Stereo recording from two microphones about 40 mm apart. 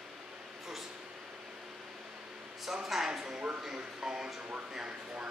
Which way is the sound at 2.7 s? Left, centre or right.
Centre.